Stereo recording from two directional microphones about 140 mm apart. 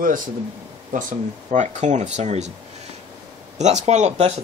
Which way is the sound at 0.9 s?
65° right (ahead or behind).